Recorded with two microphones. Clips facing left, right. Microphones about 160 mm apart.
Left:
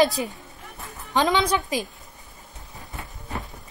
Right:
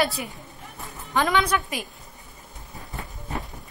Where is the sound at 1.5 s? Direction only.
30° left (ahead or behind).